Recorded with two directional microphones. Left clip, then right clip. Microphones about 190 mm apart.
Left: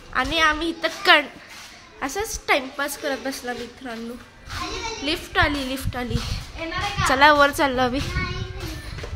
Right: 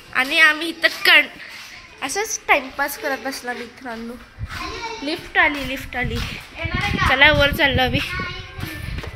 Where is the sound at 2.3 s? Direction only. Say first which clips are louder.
Right 4 dB; 30° left (ahead or behind).